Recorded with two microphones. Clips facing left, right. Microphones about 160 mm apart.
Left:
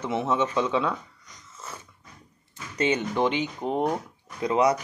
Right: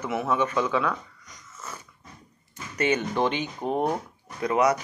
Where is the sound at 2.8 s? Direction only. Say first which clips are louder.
Even; 20° left (ahead or behind).